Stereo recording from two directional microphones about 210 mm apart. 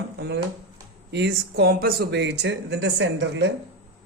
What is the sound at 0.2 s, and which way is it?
Speech, 55° right (ahead or behind).